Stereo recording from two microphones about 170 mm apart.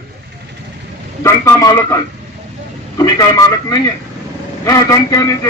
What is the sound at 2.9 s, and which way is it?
Music, 20° left (ahead or behind).